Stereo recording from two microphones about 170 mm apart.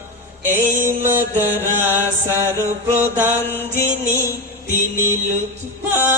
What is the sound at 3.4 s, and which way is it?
Mantra, 10° left (ahead or behind).